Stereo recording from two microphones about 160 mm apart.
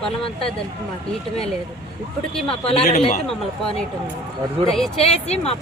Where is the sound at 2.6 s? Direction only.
40° left (ahead or behind).